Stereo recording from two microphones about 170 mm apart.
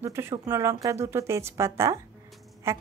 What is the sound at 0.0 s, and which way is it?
Speech, 15° right (ahead or behind).